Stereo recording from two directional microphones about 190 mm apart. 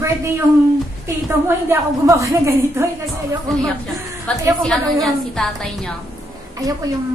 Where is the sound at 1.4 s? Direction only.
15° right (ahead or behind).